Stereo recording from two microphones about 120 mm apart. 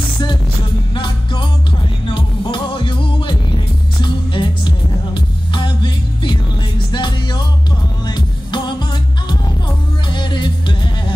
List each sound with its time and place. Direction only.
0.9 s music: 40° left (ahead or behind)
10.1 s music: 40° left (ahead or behind)